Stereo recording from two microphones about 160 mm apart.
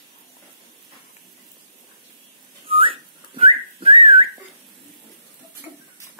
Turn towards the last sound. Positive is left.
turn(degrees=-35)  # may be behind; listen again after turning